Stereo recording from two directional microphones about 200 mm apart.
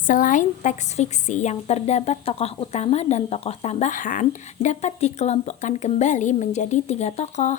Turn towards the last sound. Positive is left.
turn(degrees=35)  # may be behind; listen again after turning